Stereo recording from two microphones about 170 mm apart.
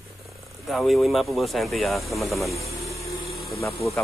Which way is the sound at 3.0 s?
65° right (ahead or behind).